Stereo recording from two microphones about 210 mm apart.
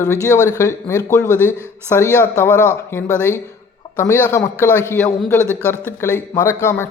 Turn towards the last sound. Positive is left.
turn(degrees=15)  # may be behind; listen again after turning